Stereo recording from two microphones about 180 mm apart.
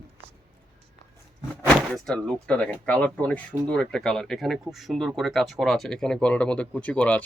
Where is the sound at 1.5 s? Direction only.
5° left (ahead or behind).